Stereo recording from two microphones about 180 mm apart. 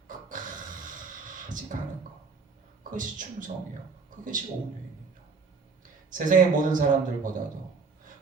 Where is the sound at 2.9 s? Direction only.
45° right (ahead or behind).